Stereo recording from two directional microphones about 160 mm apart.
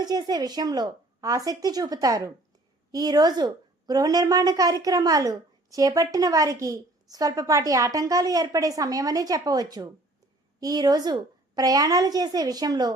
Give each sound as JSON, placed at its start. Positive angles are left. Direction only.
{"t": 0.0, "sound": "a woman's voice", "side_deg": -25}